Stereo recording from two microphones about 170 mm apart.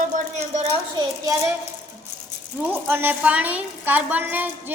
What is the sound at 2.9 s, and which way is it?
A woman's voice, 10° right (ahead or behind).